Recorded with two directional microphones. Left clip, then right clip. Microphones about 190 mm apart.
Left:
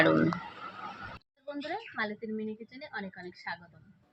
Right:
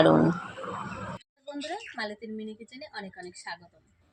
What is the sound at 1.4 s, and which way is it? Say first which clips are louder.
A woman's voice: right 1 dB; 5° right (ahead or behind).